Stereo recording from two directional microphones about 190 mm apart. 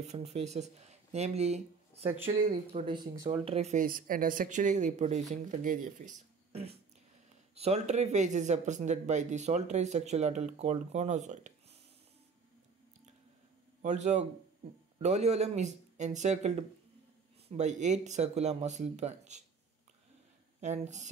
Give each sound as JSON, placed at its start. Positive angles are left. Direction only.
{"t": 0.0, "sound": "speech", "side_deg": -35}
{"t": 3.8, "sound": "speech", "side_deg": -45}
{"t": 13.8, "sound": "speech", "side_deg": -40}
{"t": 20.6, "sound": "speech", "side_deg": -35}